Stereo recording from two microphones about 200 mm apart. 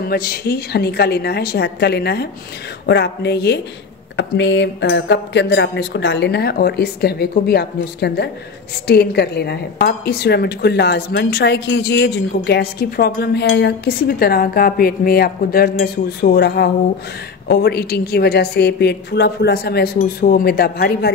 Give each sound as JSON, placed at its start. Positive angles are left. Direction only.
{"t": 0.0, "sound": "speech", "side_deg": 50}